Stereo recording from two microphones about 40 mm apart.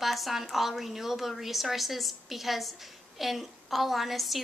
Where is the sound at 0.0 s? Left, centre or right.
Centre.